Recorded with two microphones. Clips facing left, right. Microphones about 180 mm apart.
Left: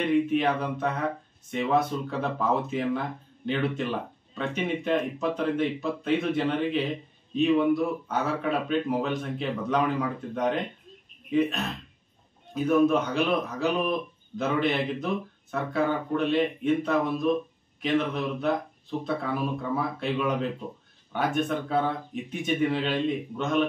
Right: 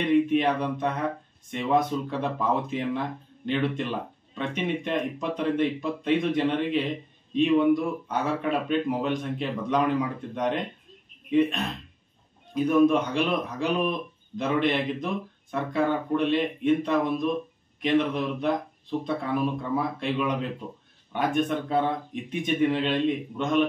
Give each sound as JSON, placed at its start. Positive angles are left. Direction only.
{"t": 0.0, "sound": "speech", "side_deg": 5}
{"t": 12.5, "sound": "speech", "side_deg": 5}